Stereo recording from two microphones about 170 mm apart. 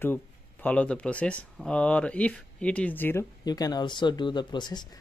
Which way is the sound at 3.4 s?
25° left (ahead or behind).